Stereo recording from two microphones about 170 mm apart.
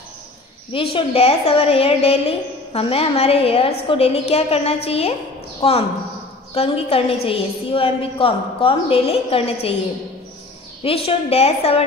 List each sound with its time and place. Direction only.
0.9 s a woman's voice: 35° left (ahead or behind)
10.8 s a woman's voice: 35° left (ahead or behind)